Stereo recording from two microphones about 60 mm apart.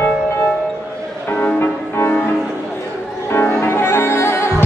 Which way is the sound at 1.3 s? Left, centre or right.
Left.